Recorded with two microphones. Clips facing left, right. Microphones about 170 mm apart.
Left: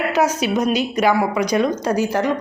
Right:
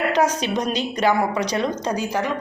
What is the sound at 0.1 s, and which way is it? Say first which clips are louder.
A woman's voice: left 2 dB; 10° left (ahead or behind).